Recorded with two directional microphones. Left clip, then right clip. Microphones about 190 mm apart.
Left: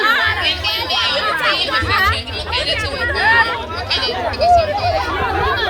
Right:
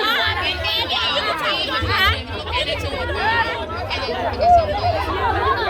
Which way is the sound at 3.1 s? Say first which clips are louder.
Left 6 dB; 10° left (ahead or behind).